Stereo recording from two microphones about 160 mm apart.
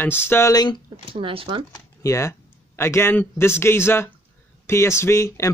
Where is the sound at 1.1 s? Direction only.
35° right (ahead or behind).